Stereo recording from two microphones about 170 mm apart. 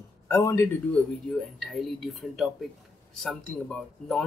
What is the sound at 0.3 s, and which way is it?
Speech, 15° left (ahead or behind).